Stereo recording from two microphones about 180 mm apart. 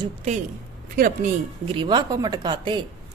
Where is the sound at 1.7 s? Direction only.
25° right (ahead or behind).